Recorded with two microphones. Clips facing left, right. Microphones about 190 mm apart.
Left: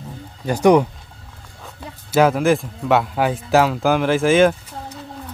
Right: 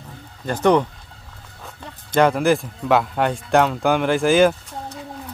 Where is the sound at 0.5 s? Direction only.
10° left (ahead or behind).